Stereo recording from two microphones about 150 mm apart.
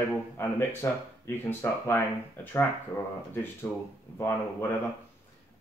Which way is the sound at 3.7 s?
10° left (ahead or behind).